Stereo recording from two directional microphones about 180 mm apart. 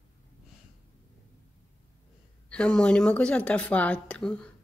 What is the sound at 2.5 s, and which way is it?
Speech, 5° left (ahead or behind).